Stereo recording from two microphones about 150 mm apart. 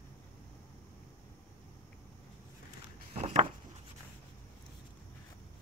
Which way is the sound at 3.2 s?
50° right (ahead or behind).